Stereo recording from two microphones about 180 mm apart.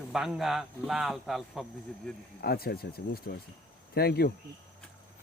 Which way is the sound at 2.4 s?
60° left (ahead or behind).